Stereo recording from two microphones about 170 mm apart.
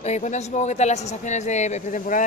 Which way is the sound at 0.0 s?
40° left (ahead or behind).